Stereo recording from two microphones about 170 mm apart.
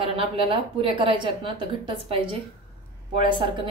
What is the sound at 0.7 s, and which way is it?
Speech, 30° right (ahead or behind).